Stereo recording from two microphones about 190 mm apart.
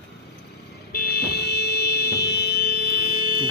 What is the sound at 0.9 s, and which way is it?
Vehicle, 55° left (ahead or behind).